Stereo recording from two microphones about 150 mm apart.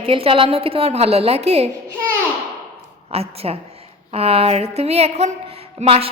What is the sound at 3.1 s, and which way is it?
Speech, 40° right (ahead or behind).